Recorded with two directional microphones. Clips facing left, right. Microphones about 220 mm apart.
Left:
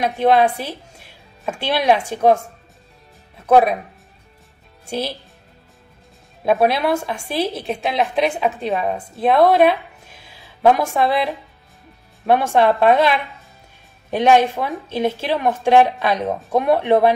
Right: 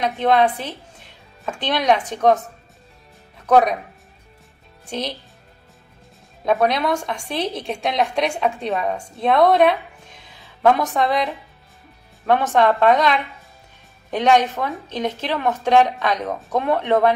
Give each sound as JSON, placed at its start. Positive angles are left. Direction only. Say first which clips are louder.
{"t": 0.0, "sound": "a woman's voice", "louder": "left 2 dB", "side_deg": 10}
{"t": 3.4, "sound": "speech", "louder": "left 2 dB", "side_deg": 5}
{"t": 4.8, "sound": "speech", "louder": "left 2 dB", "side_deg": 10}
{"t": 6.4, "sound": "a woman's voice", "louder": "left 2 dB", "side_deg": 10}
{"t": 9.5, "sound": "a sound", "louder": "left 1 dB", "side_deg": 5}
{"t": 12.3, "sound": "a woman's voice", "louder": "left 2 dB", "side_deg": 10}
{"t": 14.1, "sound": "a woman's voice", "louder": "left 2 dB", "side_deg": 10}